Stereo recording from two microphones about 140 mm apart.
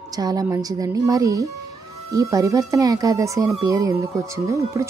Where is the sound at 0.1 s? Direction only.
25° right (ahead or behind).